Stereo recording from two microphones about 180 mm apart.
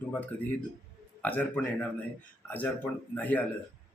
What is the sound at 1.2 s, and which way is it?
Speech, 5° left (ahead or behind).